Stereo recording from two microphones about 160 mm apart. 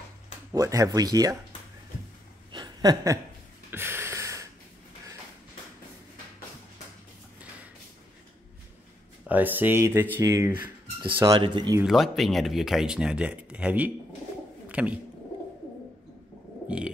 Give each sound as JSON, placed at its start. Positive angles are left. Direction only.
{"t": 0.5, "sound": "speech", "side_deg": -20}
{"t": 2.5, "sound": "a sound", "side_deg": -25}
{"t": 9.3, "sound": "speech", "side_deg": -10}
{"t": 11.8, "sound": "speech", "side_deg": 0}
{"t": 16.6, "sound": "stomach rumble", "side_deg": -5}